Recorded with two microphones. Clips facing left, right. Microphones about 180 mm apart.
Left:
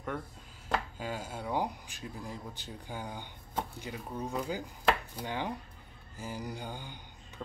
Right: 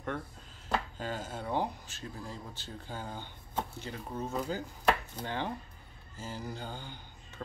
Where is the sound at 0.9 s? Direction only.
10° left (ahead or behind).